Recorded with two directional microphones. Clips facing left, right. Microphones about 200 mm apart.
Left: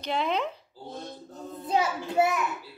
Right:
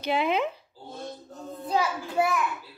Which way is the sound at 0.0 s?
5° right (ahead or behind).